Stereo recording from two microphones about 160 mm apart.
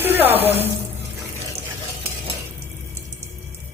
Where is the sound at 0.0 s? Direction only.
10° right (ahead or behind).